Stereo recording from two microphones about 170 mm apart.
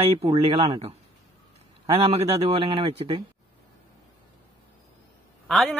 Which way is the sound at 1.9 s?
35° right (ahead or behind).